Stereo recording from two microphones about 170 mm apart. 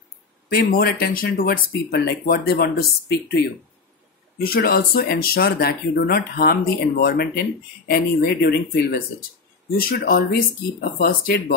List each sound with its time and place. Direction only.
0.5 s speech: 60° left (ahead or behind)
4.4 s speech: 65° left (ahead or behind)